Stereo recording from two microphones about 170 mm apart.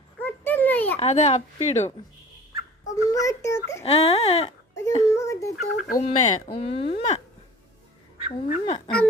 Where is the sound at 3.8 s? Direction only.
40° left (ahead or behind).